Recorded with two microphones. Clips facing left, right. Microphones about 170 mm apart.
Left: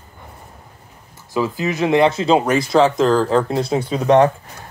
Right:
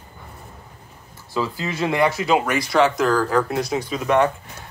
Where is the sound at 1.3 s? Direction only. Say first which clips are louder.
Left 5 dB; 20° left (ahead or behind).